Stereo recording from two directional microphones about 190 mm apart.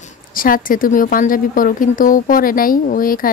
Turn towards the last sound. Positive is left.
turn(degrees=50)  # may be behind; listen again after turning